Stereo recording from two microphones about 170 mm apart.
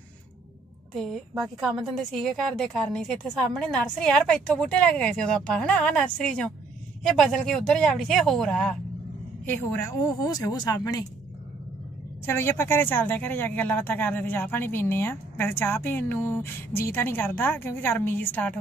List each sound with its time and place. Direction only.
0.9 s a woman's voice: centre (ahead or behind); by 11.1 s 20° left (ahead or behind)
12.3 s speech: 15° left (ahead or behind)